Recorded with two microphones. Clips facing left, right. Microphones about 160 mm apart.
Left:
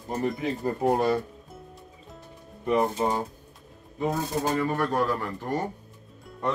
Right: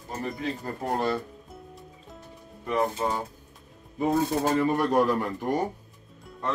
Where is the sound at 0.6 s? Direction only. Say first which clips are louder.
Left 6 dB; 20° left (ahead or behind).